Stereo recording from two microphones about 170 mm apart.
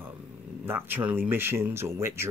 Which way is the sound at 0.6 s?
10° right (ahead or behind).